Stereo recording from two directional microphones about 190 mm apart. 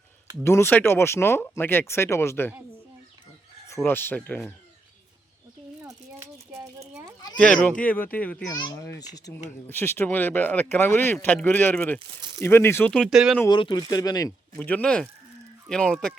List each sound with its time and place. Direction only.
0.4 s speech: 15° left (ahead or behind)
3.8 s speech: 10° left (ahead or behind)
5.8 s a sound: 15° right (ahead or behind)
7.3 s speech: 5° left (ahead or behind)
8.5 s speech: 20° left (ahead or behind); by 13.4 s centre (ahead or behind)
13.4 s speech: 25° left (ahead or behind); by 16.1 s 5° left (ahead or behind)